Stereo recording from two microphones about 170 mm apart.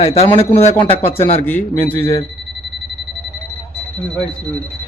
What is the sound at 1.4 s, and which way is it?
Speech, 10° left (ahead or behind).